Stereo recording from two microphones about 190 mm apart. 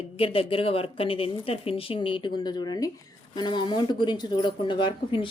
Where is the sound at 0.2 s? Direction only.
30° left (ahead or behind).